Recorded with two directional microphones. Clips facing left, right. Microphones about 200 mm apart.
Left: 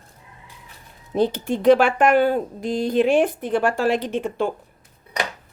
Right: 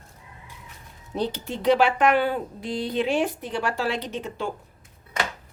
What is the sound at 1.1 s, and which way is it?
Speech, 50° left (ahead or behind).